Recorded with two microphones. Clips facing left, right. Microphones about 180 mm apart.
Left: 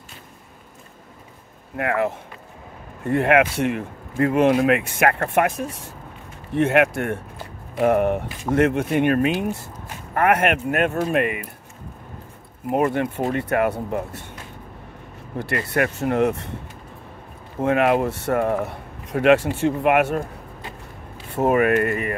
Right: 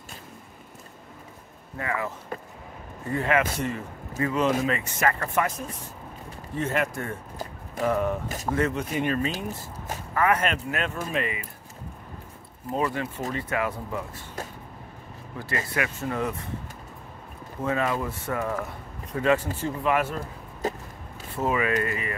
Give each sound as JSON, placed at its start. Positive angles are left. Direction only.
{"t": 1.8, "sound": "speech", "side_deg": 70}
{"t": 12.8, "sound": "speech", "side_deg": 60}
{"t": 15.3, "sound": "speech", "side_deg": 70}
{"t": 17.6, "sound": "speech", "side_deg": 70}
{"t": 20.6, "sound": "a sound", "side_deg": -40}
{"t": 21.4, "sound": "speech", "side_deg": 60}